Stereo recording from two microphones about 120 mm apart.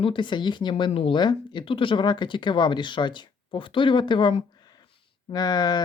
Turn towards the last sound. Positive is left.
turn(degrees=35)  # may be behind; listen again after turning